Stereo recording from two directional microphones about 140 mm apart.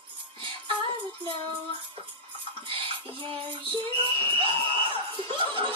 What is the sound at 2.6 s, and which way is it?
Child singing, 40° right (ahead or behind).